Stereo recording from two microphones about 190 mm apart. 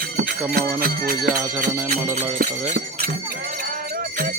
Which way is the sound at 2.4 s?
50° right (ahead or behind).